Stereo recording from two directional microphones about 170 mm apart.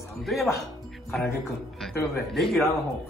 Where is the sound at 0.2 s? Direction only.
Centre (ahead or behind).